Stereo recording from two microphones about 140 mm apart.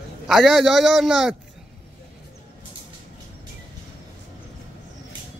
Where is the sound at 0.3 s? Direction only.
Centre (ahead or behind).